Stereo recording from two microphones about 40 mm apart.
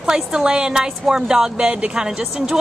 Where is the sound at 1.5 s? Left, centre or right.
Right.